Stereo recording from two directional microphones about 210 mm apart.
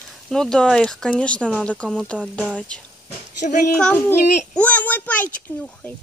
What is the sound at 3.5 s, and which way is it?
Speech, 35° left (ahead or behind).